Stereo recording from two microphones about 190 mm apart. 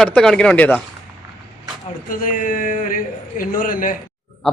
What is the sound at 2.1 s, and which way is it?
A man's voice, 45° left (ahead or behind).